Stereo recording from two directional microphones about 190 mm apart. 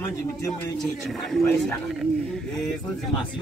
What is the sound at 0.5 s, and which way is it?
Speech, centre (ahead or behind).